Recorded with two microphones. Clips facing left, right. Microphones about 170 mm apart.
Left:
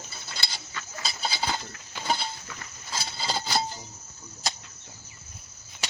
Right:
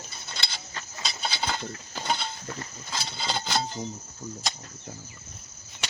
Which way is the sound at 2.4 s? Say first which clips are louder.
Right 6 dB; 35° right (ahead or behind).